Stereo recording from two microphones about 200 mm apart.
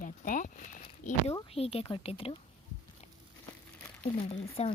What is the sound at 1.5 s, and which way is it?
Speech, 30° left (ahead or behind).